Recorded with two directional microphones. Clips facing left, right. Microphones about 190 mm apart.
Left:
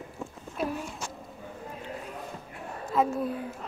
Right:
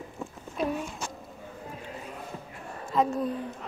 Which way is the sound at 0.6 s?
5° left (ahead or behind).